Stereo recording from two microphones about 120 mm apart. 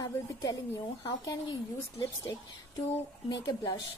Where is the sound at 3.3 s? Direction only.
35° left (ahead or behind).